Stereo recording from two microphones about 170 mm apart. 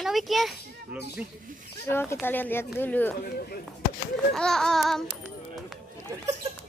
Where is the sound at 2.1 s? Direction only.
10° left (ahead or behind).